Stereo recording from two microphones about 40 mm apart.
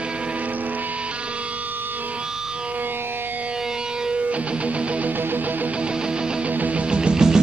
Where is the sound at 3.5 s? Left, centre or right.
Centre.